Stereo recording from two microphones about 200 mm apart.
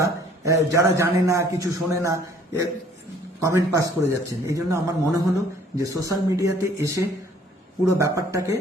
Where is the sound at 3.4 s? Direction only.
15° right (ahead or behind).